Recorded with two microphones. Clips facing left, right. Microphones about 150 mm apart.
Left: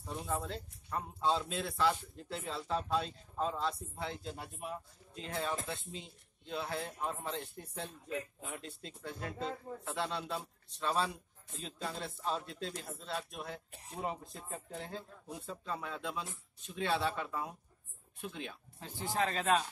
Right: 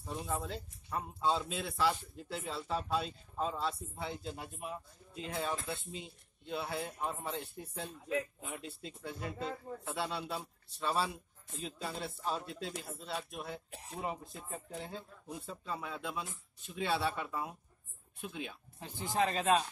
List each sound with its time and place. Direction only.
0.0 s speech: 5° right (ahead or behind)
18.8 s speech: 15° right (ahead or behind)